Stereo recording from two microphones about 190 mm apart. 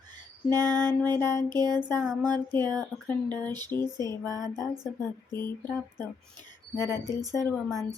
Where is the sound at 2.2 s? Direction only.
10° left (ahead or behind).